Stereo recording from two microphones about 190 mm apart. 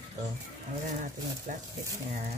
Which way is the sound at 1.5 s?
45° right (ahead or behind).